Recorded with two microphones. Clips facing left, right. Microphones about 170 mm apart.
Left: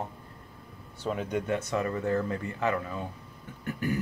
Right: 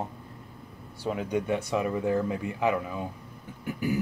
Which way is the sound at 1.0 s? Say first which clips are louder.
Right 2 dB; 10° right (ahead or behind).